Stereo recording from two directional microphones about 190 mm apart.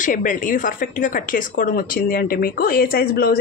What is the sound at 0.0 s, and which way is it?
Speech, 45° left (ahead or behind).